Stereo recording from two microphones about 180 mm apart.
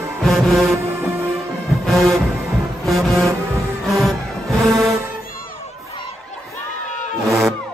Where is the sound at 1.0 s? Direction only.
15° right (ahead or behind).